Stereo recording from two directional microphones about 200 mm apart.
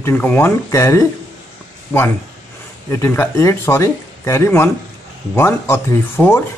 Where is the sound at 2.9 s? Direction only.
15° left (ahead or behind).